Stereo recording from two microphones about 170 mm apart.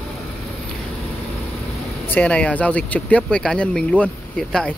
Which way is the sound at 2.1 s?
10° left (ahead or behind).